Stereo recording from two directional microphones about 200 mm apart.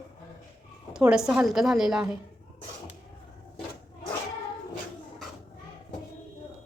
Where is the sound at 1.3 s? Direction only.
Centre (ahead or behind).